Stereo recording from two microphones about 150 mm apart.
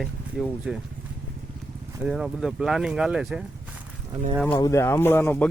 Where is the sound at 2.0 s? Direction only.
Centre (ahead or behind).